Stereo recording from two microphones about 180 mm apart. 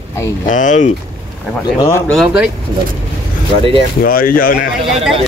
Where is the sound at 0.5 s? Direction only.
45° left (ahead or behind).